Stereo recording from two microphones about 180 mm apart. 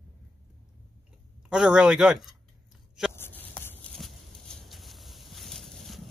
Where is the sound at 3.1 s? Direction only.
10° left (ahead or behind).